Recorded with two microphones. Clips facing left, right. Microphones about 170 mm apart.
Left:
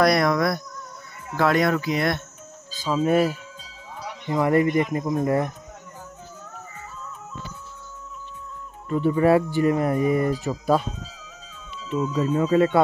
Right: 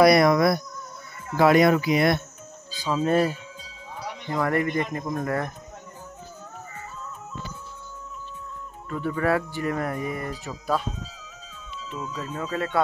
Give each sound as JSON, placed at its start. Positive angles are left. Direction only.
{"t": 0.0, "sound": "speech", "side_deg": -5}
{"t": 2.9, "sound": "speech", "side_deg": 10}
{"t": 4.3, "sound": "speech", "side_deg": 20}
{"t": 8.8, "sound": "speech", "side_deg": 20}
{"t": 12.0, "sound": "speech", "side_deg": 20}